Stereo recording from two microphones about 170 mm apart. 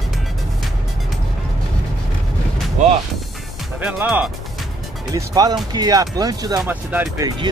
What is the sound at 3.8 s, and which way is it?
Speech, 10° right (ahead or behind).